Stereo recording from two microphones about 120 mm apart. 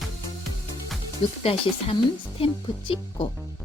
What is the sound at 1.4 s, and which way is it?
Speech, 55° left (ahead or behind).